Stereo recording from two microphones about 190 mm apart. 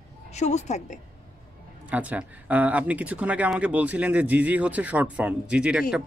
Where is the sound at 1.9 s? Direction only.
10° right (ahead or behind).